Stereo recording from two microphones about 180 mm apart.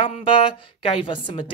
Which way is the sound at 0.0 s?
30° left (ahead or behind).